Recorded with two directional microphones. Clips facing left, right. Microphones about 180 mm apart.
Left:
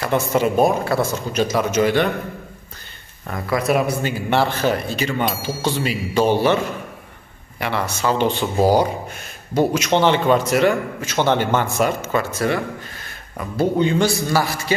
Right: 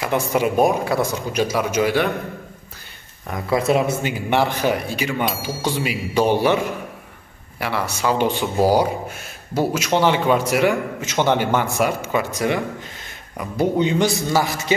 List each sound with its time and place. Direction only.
0.0 s speech: 10° right (ahead or behind)
3.3 s speech: 20° right (ahead or behind)
5.2 s speech: centre (ahead or behind)
6.1 s speech: 15° right (ahead or behind)